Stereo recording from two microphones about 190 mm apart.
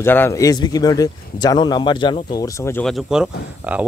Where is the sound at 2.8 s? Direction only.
Centre (ahead or behind).